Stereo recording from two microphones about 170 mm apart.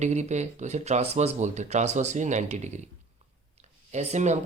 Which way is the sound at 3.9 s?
40° right (ahead or behind).